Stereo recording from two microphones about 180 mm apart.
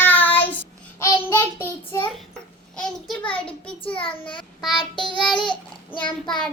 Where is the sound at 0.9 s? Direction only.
15° left (ahead or behind).